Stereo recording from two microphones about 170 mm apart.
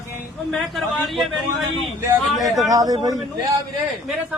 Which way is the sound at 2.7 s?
20° right (ahead or behind).